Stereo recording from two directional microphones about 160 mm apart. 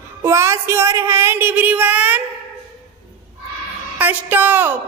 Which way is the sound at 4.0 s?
10° right (ahead or behind).